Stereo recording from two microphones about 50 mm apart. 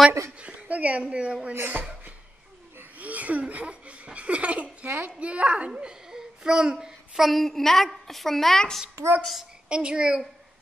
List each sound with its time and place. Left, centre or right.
0.4 s a woman's voice: right
1.5 s speech: right
3.0 s speech: right
5.8 s a child's voice: centre
7.2 s speech: centre
9.7 s speech: centre